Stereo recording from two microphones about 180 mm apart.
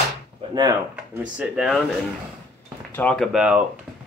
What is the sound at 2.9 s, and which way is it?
Speech, 5° left (ahead or behind).